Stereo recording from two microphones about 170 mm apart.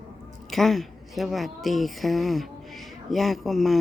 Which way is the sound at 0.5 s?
Centre (ahead or behind).